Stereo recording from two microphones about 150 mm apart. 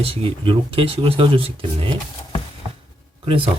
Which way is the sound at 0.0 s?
40° right (ahead or behind).